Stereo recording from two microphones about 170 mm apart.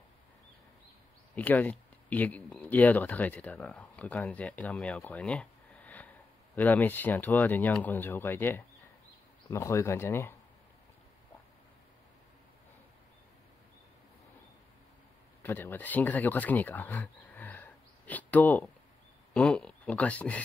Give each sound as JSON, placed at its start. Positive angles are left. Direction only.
{"t": 1.3, "sound": "speech", "side_deg": 10}
{"t": 15.4, "sound": "speech", "side_deg": 10}